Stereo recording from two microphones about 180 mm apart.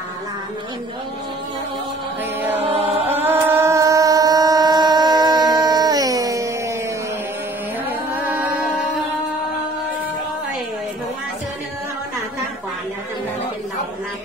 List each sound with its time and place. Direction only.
2.6 s chant: 35° right (ahead or behind)
3.1 s a sound: 10° right (ahead or behind)
8.3 s music: 5° right (ahead or behind)